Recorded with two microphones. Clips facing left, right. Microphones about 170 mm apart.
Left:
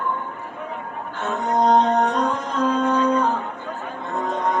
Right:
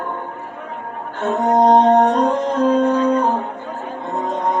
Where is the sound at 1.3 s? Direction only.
55° right (ahead or behind).